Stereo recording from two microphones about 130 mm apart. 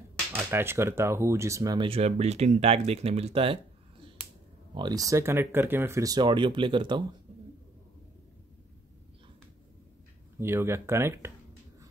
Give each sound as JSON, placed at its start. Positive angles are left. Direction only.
{"t": 0.3, "sound": "speech", "side_deg": -15}
{"t": 1.9, "sound": "speech", "side_deg": -55}
{"t": 4.7, "sound": "speech", "side_deg": -30}
{"t": 10.4, "sound": "speech", "side_deg": -20}